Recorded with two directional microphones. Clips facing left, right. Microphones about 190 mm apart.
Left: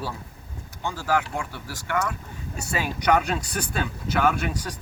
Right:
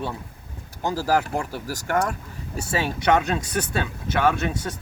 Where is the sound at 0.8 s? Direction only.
40° right (ahead or behind).